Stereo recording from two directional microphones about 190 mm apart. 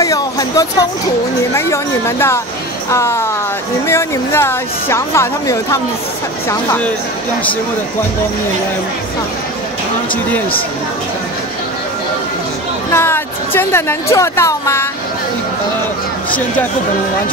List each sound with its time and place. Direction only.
0.0 s a sound: 20° left (ahead or behind)
1.5 s speech: 15° left (ahead or behind)
12.9 s speech: 10° left (ahead or behind)